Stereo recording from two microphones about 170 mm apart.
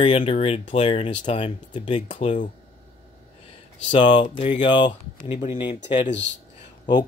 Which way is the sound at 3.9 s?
30° left (ahead or behind).